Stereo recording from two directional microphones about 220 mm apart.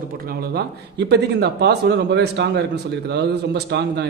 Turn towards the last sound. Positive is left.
turn(degrees=-50)  # may be behind; listen again after turning